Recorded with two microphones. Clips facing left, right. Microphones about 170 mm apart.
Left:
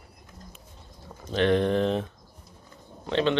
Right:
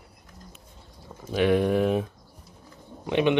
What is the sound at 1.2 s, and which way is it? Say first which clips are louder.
Speech: right 1 dB; 10° right (ahead or behind).